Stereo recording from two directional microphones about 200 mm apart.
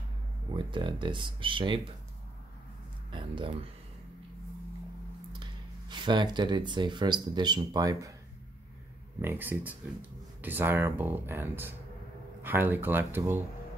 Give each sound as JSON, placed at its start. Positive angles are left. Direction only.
{"t": 0.6, "sound": "speech", "side_deg": -25}
{"t": 3.1, "sound": "speech", "side_deg": -25}
{"t": 5.4, "sound": "speech", "side_deg": -20}
{"t": 9.2, "sound": "speech", "side_deg": -10}